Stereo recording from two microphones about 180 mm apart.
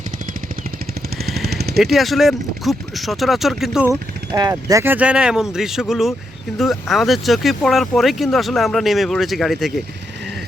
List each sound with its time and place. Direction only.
1.2 s jackhammer: centre (ahead or behind)
1.5 s a sound: 65° right (ahead or behind)
1.8 s speech: centre (ahead or behind)
4.4 s speech: 20° right (ahead or behind); by 9.8 s centre (ahead or behind)